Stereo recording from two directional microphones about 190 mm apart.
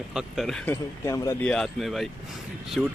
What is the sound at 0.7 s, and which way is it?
Speech, 15° left (ahead or behind).